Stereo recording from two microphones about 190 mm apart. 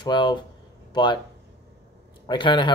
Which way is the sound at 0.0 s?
25° left (ahead or behind).